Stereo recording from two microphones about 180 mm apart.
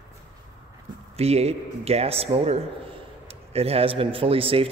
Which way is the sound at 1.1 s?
35° right (ahead or behind).